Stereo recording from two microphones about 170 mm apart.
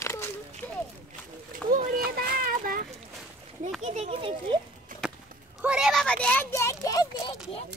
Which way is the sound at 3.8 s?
40° right (ahead or behind).